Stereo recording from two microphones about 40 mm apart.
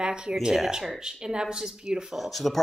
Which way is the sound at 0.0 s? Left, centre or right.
Right.